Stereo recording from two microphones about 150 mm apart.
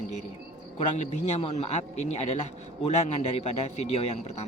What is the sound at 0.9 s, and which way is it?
Speech, 50° left (ahead or behind).